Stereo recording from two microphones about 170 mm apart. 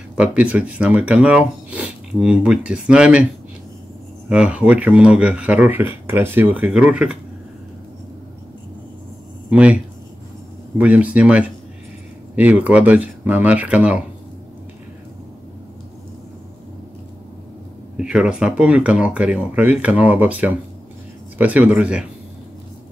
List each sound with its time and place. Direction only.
0.2 s speech: 10° right (ahead or behind)
4.3 s speech: 5° right (ahead or behind)
9.5 s speech: 5° right (ahead or behind)
10.8 s speech: 5° right (ahead or behind)
17.9 s speech: 5° right (ahead or behind)